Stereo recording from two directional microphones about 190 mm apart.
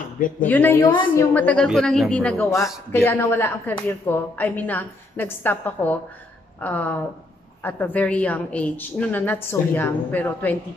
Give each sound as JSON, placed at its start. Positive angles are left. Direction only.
{"t": 0.4, "sound": "a man's voice", "side_deg": 10}
{"t": 0.8, "sound": "a woman's voice", "side_deg": 25}
{"t": 1.3, "sound": "a man's voice", "side_deg": 5}